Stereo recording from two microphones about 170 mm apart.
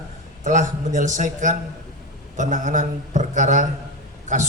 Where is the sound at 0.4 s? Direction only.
45° right (ahead or behind).